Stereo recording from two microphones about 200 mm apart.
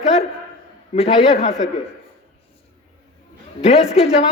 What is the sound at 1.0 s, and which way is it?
Speech, 30° left (ahead or behind).